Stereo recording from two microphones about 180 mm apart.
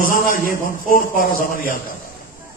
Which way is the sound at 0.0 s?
50° left (ahead or behind).